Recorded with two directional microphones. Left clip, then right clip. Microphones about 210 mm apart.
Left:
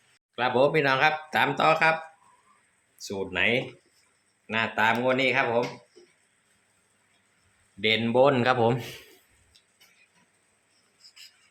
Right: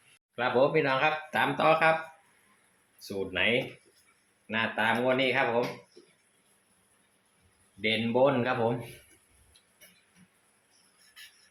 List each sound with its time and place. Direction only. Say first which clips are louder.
0.3 s speech: left 3 dB; 30° left (ahead or behind)
3.0 s speech: left 3 dB; 30° left (ahead or behind)
7.8 s speech: left 4 dB; 35° left (ahead or behind)